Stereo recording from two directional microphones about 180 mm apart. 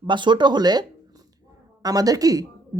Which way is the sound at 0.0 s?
25° right (ahead or behind).